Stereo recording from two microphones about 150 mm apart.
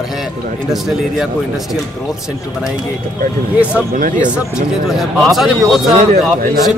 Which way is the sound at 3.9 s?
60° right (ahead or behind).